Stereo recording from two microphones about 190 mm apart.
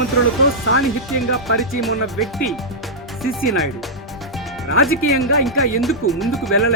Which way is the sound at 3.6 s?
Centre (ahead or behind).